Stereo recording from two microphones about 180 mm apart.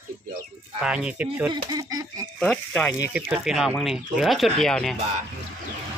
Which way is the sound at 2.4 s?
5° left (ahead or behind).